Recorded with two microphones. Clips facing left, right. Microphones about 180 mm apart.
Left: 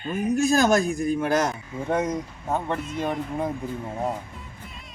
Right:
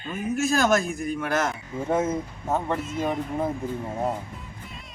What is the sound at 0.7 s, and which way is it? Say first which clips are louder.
Speech: left 2 dB; 35° left (ahead or behind).